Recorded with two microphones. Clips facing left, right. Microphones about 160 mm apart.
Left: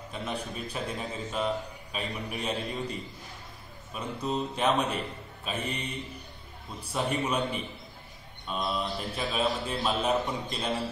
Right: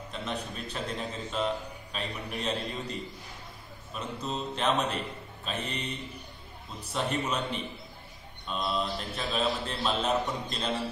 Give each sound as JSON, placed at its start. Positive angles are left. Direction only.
{"t": 0.1, "sound": "a man's voice", "side_deg": 10}